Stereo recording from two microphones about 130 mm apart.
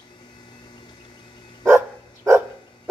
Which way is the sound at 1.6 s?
20° right (ahead or behind).